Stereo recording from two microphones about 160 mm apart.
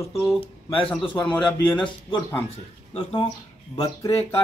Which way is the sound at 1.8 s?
30° left (ahead or behind).